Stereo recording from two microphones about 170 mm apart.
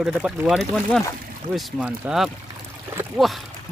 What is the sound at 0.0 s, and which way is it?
Speech, 5° right (ahead or behind).